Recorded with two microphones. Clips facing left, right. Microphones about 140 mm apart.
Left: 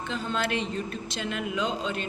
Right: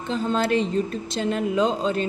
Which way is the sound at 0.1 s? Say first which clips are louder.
Right 8 dB; 35° right (ahead or behind).